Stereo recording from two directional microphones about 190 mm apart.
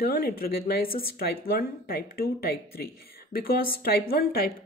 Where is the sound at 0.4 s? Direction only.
55° left (ahead or behind).